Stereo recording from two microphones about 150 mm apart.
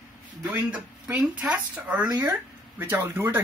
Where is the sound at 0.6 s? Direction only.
10° right (ahead or behind).